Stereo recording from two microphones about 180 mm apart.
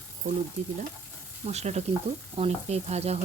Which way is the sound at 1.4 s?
40° right (ahead or behind).